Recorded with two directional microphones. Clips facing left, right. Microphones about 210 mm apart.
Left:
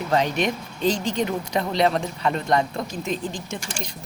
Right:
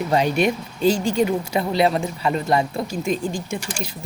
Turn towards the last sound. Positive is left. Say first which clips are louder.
# right 4 dB
turn(degrees=-5)  # may be behind; listen again after turning